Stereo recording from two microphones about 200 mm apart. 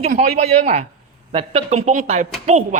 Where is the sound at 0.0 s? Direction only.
35° right (ahead or behind).